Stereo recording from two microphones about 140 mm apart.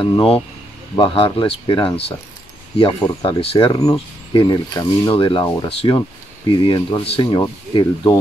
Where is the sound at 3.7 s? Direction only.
25° left (ahead or behind).